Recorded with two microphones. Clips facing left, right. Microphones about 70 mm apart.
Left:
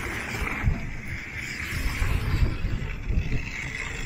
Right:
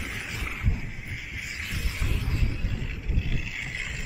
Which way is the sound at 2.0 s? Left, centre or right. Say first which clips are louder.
Even; left.